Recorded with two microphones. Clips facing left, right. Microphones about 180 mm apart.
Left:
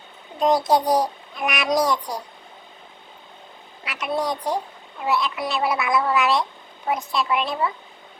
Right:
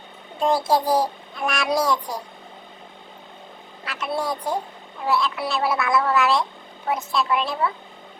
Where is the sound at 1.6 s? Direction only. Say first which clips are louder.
Left 1 dB; 5° right (ahead or behind).